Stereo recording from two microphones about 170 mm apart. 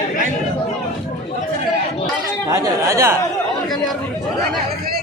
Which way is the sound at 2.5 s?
20° right (ahead or behind).